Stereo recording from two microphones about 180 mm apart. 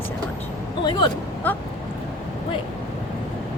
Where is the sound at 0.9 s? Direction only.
25° left (ahead or behind).